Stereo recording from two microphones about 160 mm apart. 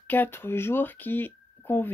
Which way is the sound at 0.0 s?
10° left (ahead or behind).